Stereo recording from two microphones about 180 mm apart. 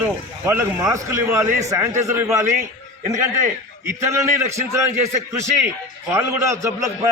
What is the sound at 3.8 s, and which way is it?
Speech, 15° right (ahead or behind).